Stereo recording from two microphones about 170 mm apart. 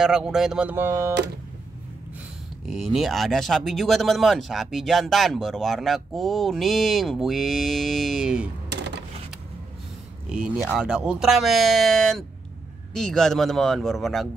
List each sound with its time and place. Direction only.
0.0 s speech: 5° right (ahead or behind)
2.7 s speech: centre (ahead or behind)
8.6 s a sound: 90° right
10.3 s speech: 5° right (ahead or behind)